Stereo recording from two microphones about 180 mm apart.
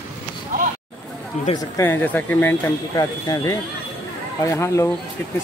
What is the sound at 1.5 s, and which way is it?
Speech, 15° left (ahead or behind).